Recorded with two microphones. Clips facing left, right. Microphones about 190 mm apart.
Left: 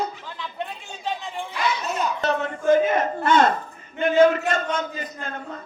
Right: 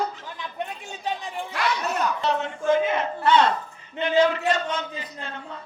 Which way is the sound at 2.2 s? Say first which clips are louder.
Left 4 dB; 50° left (ahead or behind).